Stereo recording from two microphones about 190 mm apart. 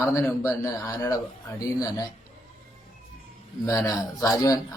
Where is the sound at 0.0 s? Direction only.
15° left (ahead or behind).